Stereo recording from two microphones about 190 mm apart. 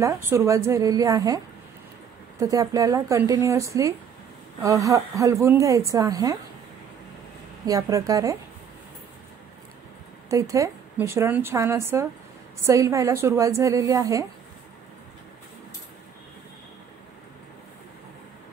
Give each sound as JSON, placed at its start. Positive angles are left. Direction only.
{"t": 0.0, "sound": "a woman's voice", "side_deg": -15}
{"t": 7.6, "sound": "a woman's voice", "side_deg": -20}
{"t": 10.3, "sound": "a woman's voice", "side_deg": -15}